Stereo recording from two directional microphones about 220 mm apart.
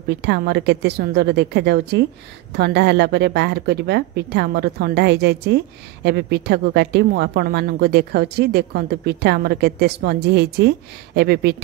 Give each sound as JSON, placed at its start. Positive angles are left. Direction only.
{"t": 0.1, "sound": "a woman's voice", "side_deg": -50}